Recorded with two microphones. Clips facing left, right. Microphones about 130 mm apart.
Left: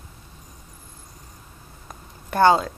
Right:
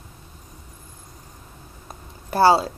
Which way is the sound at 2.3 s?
35° right (ahead or behind).